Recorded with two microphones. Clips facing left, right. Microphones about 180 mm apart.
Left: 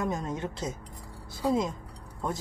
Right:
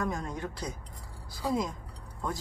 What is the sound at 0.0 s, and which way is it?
A woman's voice, 20° left (ahead or behind).